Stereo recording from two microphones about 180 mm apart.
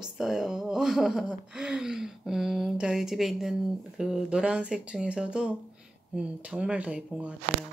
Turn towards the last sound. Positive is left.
turn(degrees=-5)  # may be behind; listen again after turning